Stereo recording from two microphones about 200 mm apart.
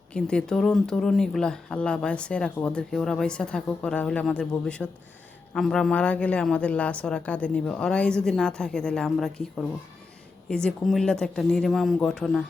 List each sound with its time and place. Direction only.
0.1 s speech: 5° left (ahead or behind)